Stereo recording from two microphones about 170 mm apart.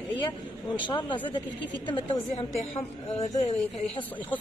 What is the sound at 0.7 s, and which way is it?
A man's voice, 30° left (ahead or behind).